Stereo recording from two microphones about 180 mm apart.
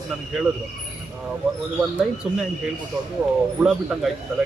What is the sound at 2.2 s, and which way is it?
Speech, centre (ahead or behind).